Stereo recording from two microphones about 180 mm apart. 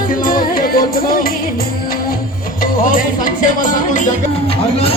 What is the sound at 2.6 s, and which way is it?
Music, 50° left (ahead or behind).